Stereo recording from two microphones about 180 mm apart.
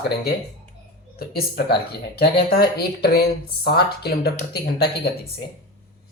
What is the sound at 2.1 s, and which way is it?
Speech, 60° left (ahead or behind).